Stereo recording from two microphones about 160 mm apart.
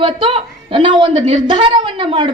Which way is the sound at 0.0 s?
30° right (ahead or behind).